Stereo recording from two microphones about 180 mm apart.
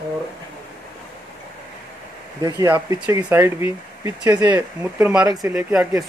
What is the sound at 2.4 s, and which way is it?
Speech, 20° right (ahead or behind).